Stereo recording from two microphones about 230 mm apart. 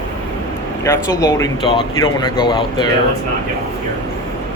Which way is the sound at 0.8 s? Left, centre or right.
Centre.